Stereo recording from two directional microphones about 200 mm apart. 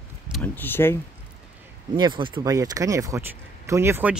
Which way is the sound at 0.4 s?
10° left (ahead or behind).